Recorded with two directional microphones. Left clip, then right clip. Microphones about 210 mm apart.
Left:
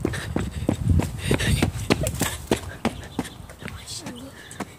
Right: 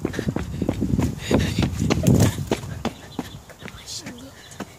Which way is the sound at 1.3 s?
10° left (ahead or behind).